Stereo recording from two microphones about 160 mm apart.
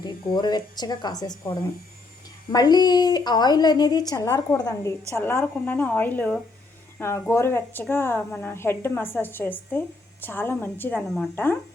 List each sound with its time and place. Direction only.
0.0 s a woman's voice: 25° left (ahead or behind); by 11.5 s 10° left (ahead or behind)